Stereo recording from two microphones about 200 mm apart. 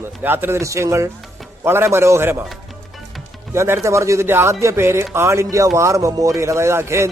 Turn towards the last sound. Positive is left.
turn(degrees=-15)  # may be behind; listen again after turning